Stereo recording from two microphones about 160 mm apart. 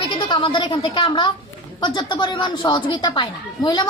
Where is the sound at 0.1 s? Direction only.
30° left (ahead or behind).